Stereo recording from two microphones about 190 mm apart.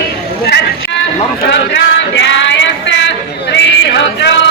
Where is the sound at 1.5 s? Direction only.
70° left (ahead or behind).